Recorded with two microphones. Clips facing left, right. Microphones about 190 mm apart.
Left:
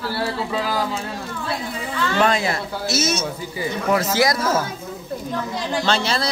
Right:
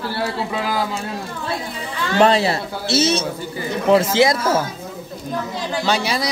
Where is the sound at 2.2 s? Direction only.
30° right (ahead or behind).